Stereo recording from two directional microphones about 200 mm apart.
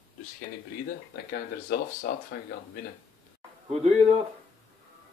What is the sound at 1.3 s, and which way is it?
Speech, 50° left (ahead or behind).